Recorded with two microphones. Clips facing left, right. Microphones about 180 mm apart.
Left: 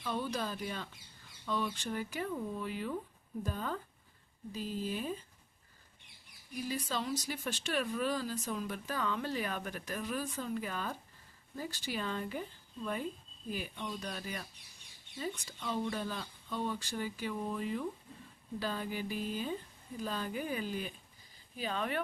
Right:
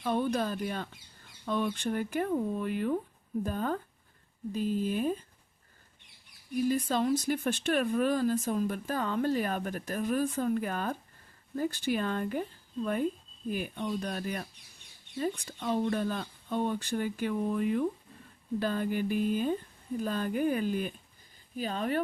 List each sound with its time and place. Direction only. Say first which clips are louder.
0.0 s speech: right 7 dB; 55° right (ahead or behind)
6.7 s speech: right 8 dB; 50° right (ahead or behind)